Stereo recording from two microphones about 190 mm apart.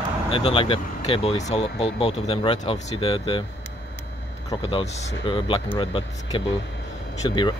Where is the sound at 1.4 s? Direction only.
35° left (ahead or behind).